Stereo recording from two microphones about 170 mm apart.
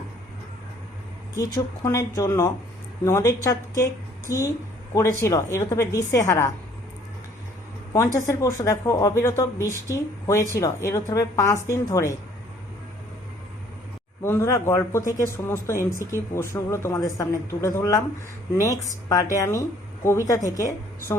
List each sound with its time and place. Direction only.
1.5 s a woman's voice: 20° left (ahead or behind)
7.9 s speech: 15° left (ahead or behind)
14.2 s a woman's voice: 15° left (ahead or behind)